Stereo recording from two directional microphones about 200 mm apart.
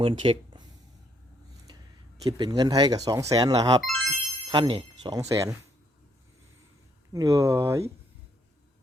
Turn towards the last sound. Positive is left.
turn(degrees=-15)  # may be behind; listen again after turning